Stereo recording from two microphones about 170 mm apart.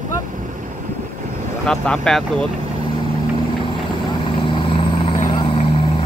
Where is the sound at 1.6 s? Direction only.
5° left (ahead or behind).